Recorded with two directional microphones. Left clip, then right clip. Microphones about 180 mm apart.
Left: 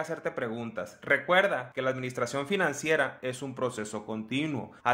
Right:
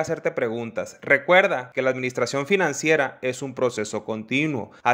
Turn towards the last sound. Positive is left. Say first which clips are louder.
# right 8 dB
turn(degrees=-30)  # may be behind; listen again after turning